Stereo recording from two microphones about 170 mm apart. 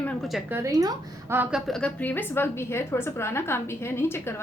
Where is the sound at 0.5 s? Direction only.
20° right (ahead or behind).